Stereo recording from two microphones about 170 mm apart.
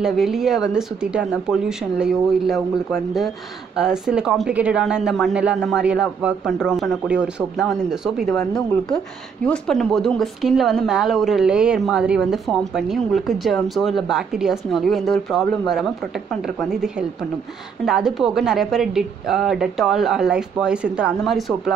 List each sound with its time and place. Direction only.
0.0 s a woman's voice: centre (ahead or behind)